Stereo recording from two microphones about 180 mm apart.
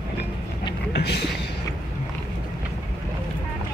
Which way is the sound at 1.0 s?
65° left (ahead or behind).